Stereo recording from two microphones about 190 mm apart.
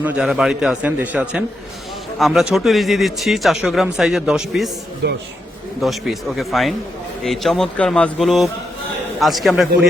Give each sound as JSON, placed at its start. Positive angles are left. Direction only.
{"t": 0.0, "sound": "speech", "side_deg": -5}
{"t": 5.0, "sound": "a man's voice", "side_deg": -70}
{"t": 5.8, "sound": "speech", "side_deg": 0}